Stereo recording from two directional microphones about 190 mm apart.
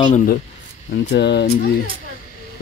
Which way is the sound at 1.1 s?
60° left (ahead or behind).